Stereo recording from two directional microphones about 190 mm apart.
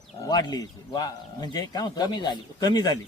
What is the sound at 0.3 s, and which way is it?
A man's voice, 20° left (ahead or behind).